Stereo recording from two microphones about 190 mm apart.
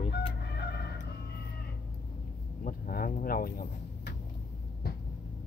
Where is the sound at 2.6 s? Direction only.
50° left (ahead or behind).